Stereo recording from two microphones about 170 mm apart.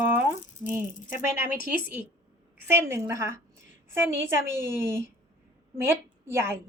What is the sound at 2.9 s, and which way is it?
A woman's voice, 15° right (ahead or behind).